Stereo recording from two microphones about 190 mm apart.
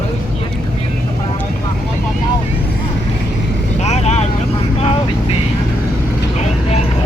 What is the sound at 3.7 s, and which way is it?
Vehicle, 35° left (ahead or behind).